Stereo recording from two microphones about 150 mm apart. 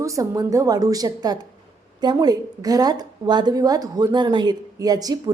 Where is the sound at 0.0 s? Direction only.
20° right (ahead or behind).